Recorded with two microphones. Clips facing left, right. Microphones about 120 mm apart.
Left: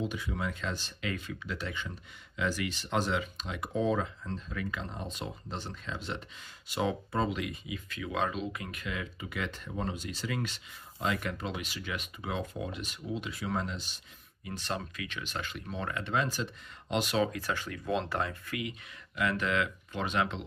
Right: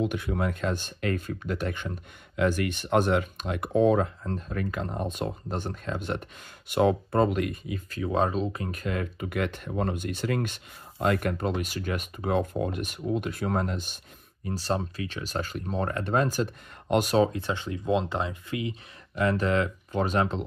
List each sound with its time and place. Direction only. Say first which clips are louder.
0.0 s speech: right 7 dB; 60° right (ahead or behind)
14.4 s speech: right 8 dB; 35° right (ahead or behind)
17.3 s speech: right 4 dB; 25° right (ahead or behind); by 20.4 s 40° right (ahead or behind)